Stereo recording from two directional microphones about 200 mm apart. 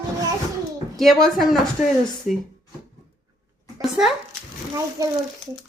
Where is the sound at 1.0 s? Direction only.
Centre (ahead or behind).